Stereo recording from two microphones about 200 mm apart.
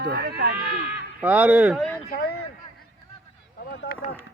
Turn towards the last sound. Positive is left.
turn(degrees=55)  # may be behind; listen again after turning